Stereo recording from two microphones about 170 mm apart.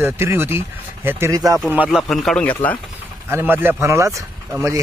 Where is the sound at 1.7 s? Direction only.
5° right (ahead or behind).